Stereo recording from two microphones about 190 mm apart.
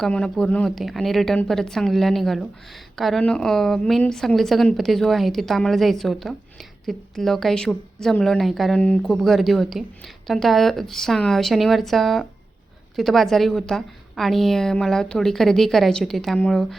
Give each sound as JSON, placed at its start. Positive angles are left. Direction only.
{"t": 0.0, "sound": "a woman's voice", "side_deg": 5}